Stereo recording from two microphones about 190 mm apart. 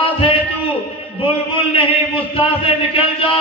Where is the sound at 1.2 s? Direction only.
30° left (ahead or behind).